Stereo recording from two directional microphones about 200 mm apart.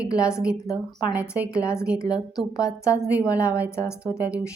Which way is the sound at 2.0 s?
20° left (ahead or behind).